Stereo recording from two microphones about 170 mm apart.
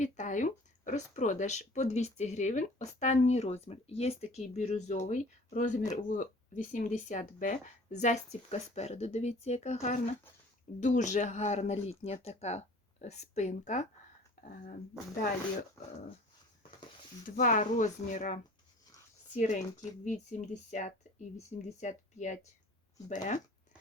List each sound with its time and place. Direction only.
0.0 s speech: 45° left (ahead or behind)
17.2 s speech: 50° left (ahead or behind)